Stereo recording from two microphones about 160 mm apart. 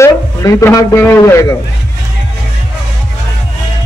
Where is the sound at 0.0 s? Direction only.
20° left (ahead or behind).